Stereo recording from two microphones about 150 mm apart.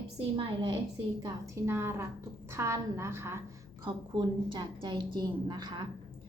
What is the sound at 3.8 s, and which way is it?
A woman's voice, 30° right (ahead or behind).